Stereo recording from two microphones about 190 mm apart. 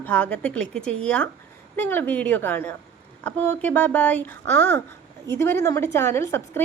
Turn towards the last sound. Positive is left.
turn(degrees=15)  # may be behind; listen again after turning